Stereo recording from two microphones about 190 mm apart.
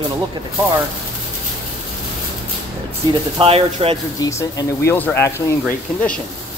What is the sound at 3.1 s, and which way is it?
Speech, 30° right (ahead or behind).